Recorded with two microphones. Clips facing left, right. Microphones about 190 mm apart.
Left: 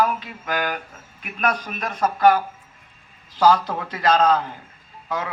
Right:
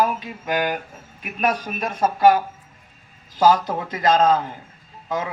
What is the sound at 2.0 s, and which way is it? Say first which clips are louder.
A man's voice: right 1 dB; 20° right (ahead or behind).